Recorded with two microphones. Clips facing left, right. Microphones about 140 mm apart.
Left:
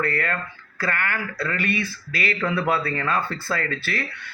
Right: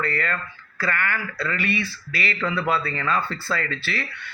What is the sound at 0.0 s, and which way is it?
Speech, 55° left (ahead or behind).